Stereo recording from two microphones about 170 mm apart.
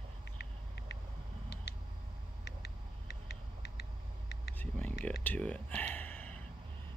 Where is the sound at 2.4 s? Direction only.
85° left.